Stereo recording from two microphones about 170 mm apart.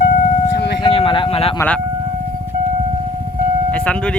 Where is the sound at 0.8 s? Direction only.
30° left (ahead or behind).